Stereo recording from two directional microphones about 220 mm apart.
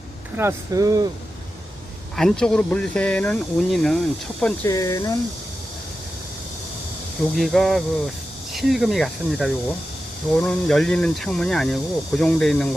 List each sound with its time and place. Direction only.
0.3 s speech: 15° right (ahead or behind)
2.1 s speech: centre (ahead or behind)
4.6 s speech: 15° left (ahead or behind)
7.3 s speech: centre (ahead or behind)